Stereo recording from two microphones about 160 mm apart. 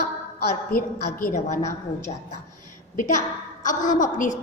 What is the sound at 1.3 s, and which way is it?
Speech, 45° left (ahead or behind).